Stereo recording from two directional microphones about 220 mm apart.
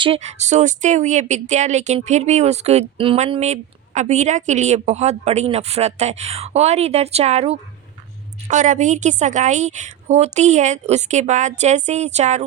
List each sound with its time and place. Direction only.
0.0 s a woman's voice: 30° right (ahead or behind)